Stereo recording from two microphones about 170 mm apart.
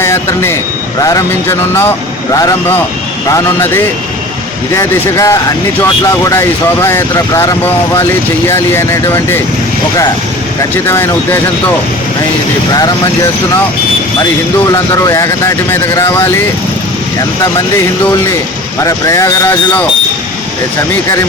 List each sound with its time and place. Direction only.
0.0 s speech: 15° left (ahead or behind)
4.8 s speech: 15° left (ahead or behind)
10.8 s speech: 15° left (ahead or behind)
14.7 s speech: 20° left (ahead or behind)
18.8 s speech: 20° left (ahead or behind)